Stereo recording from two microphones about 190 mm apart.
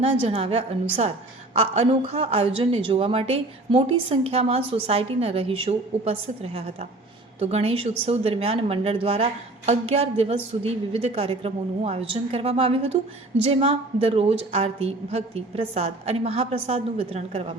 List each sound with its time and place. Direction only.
0.3 s a woman's voice: 30° right (ahead or behind)